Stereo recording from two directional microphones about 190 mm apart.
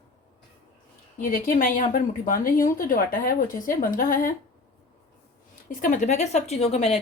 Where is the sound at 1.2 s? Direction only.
45° left (ahead or behind).